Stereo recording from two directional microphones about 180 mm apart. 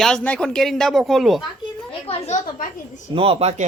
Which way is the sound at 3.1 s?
30° right (ahead or behind).